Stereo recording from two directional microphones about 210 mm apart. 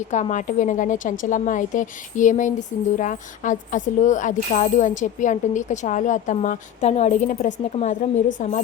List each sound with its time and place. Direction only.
0.1 s speech: 35° left (ahead or behind)